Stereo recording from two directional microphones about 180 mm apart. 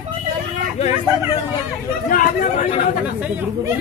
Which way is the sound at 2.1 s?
50° left (ahead or behind).